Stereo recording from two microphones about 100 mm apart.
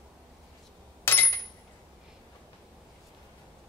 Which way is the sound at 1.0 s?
20° left (ahead or behind).